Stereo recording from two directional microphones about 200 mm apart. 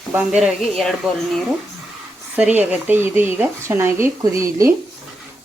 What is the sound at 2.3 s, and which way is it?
Speech, 10° right (ahead or behind).